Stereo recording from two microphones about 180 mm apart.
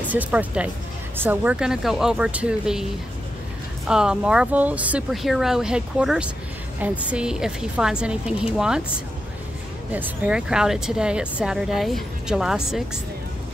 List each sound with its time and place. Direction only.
0.0 s speech: 10° right (ahead or behind)
9.9 s speech: 5° right (ahead or behind)